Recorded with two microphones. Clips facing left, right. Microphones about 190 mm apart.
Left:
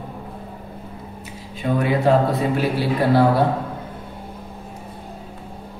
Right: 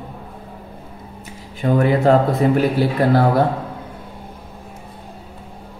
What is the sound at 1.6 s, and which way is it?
Speech, 50° right (ahead or behind).